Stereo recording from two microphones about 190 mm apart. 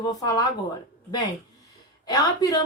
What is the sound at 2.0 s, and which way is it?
Speech, 20° left (ahead or behind).